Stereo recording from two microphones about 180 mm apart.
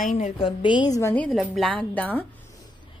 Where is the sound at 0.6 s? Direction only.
25° left (ahead or behind).